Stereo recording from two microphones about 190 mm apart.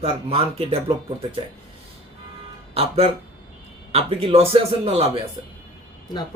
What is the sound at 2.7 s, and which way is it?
Speech, 30° right (ahead or behind).